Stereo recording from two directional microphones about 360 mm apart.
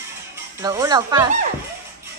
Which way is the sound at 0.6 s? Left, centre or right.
Centre.